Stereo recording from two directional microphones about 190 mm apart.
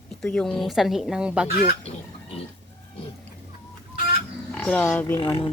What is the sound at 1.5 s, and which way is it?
Speech, 50° left (ahead or behind).